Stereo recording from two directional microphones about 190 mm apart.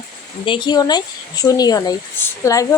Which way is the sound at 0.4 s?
25° left (ahead or behind).